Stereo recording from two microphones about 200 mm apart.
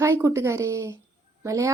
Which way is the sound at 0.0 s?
15° right (ahead or behind).